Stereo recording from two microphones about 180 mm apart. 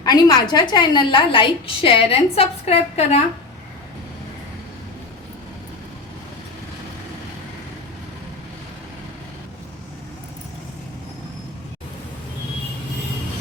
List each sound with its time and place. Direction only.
0.0 s a woman's voice: 20° left (ahead or behind)